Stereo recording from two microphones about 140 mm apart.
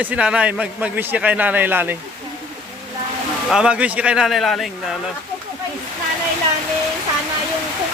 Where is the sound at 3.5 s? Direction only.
5° right (ahead or behind).